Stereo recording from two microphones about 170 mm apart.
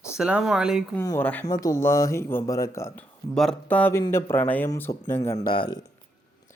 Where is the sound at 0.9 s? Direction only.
15° left (ahead or behind).